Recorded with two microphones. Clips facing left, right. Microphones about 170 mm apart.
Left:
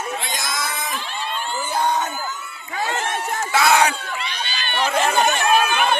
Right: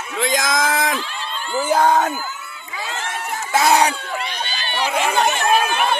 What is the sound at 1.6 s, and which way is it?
Crowd, 90° right.